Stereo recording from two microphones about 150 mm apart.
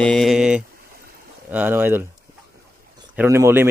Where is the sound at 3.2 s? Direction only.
15° right (ahead or behind).